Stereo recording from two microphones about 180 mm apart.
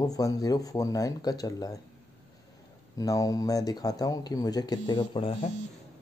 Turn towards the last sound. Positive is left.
turn(degrees=30)  # may be behind; listen again after turning